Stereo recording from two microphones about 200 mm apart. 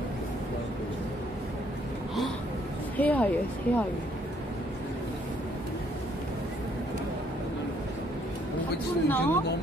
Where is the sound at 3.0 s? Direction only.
10° left (ahead or behind).